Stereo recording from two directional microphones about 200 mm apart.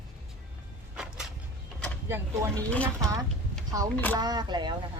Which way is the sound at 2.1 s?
10° right (ahead or behind).